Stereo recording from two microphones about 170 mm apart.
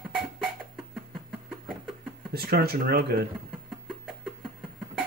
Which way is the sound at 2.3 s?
65° right (ahead or behind).